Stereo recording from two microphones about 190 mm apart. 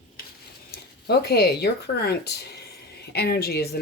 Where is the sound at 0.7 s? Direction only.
55° left (ahead or behind).